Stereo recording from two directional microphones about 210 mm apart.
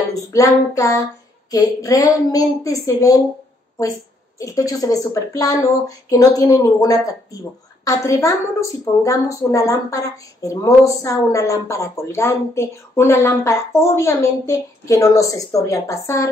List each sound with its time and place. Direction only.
0.1 s a woman's voice: 15° left (ahead or behind)
4.4 s a woman's voice: 15° left (ahead or behind)